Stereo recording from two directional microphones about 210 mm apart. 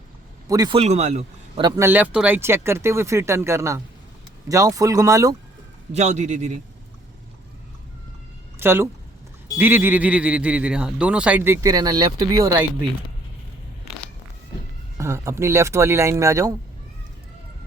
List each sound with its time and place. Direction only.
0.4 s a man's voice: 15° right (ahead or behind)
0.8 s speech: 30° right (ahead or behind)
5.9 s a man's voice: 35° right (ahead or behind)
8.5 s speech: 10° right (ahead or behind)
14.9 s speech: 15° right (ahead or behind)